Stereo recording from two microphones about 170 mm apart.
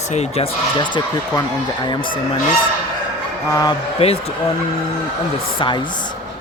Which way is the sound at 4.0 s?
35° left (ahead or behind).